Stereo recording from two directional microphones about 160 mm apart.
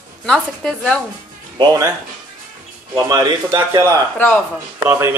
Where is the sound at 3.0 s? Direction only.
25° right (ahead or behind).